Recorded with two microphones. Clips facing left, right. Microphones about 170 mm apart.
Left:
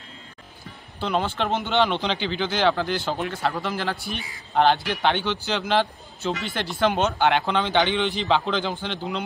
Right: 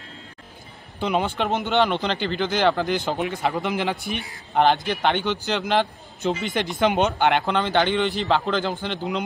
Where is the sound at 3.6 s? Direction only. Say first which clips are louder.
Right 3 dB; 15° right (ahead or behind).